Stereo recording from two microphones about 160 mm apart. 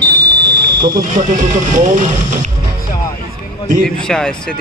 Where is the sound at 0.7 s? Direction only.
25° right (ahead or behind).